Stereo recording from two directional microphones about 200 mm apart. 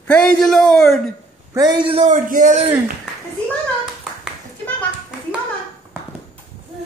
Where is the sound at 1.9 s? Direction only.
35° right (ahead or behind).